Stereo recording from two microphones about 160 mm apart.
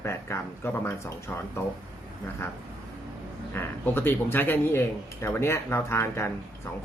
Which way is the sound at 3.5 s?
15° left (ahead or behind).